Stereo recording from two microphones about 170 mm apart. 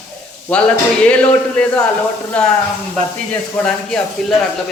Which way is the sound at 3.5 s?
5° left (ahead or behind).